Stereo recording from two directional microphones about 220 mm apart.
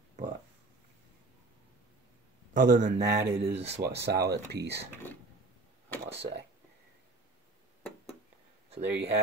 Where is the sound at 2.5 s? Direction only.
35° right (ahead or behind).